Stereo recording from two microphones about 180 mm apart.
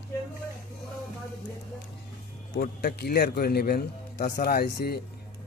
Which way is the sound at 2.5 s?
60° left (ahead or behind).